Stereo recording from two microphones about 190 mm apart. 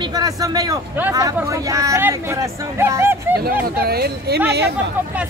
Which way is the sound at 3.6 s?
55° right (ahead or behind).